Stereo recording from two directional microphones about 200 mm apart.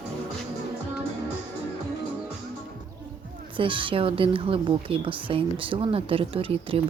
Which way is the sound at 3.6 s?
25° right (ahead or behind).